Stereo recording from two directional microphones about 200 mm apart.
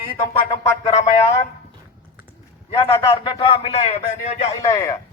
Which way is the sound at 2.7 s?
25° left (ahead or behind).